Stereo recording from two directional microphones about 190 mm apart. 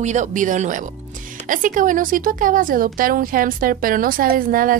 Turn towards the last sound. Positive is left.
turn(degrees=-45)  # may be behind; listen again after turning